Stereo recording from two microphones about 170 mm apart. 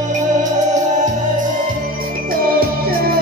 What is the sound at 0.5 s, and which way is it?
Music, 45° right (ahead or behind).